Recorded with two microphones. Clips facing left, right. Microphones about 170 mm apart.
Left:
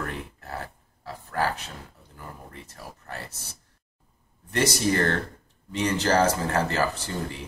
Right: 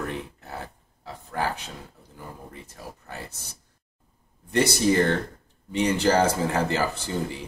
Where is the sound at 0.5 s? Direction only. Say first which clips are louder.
Even; 20° right (ahead or behind).